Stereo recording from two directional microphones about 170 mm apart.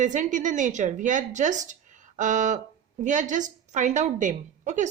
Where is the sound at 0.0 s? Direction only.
45° right (ahead or behind).